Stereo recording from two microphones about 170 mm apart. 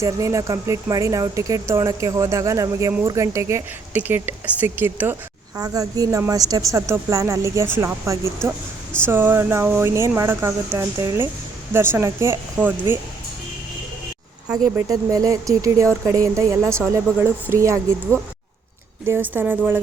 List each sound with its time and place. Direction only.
0.0 s a woman's voice: 20° right (ahead or behind)
14.8 s a woman's voice: 20° right (ahead or behind)
19.0 s a woman's voice: 10° right (ahead or behind)